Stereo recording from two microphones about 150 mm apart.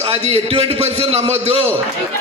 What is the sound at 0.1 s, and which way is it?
A man's voice, 40° right (ahead or behind).